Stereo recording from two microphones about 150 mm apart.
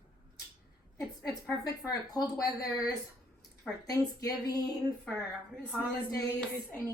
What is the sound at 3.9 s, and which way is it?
Speech, 25° left (ahead or behind).